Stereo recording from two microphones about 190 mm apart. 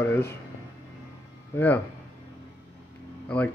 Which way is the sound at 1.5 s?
10° left (ahead or behind).